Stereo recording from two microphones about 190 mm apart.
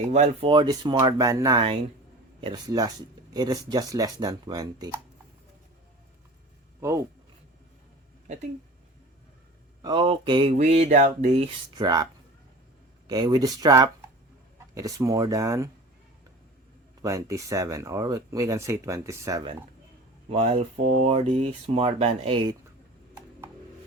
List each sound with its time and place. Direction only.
0.1 s speech: 30° right (ahead or behind)
9.8 s speech: 25° right (ahead or behind)
11.7 s speech: 20° right (ahead or behind)
13.1 s speech: 20° right (ahead or behind)
17.0 s speech: 15° right (ahead or behind)
20.3 s speech: 35° right (ahead or behind)